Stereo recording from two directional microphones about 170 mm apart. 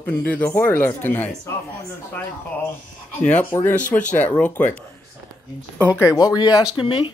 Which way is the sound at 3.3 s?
10° left (ahead or behind).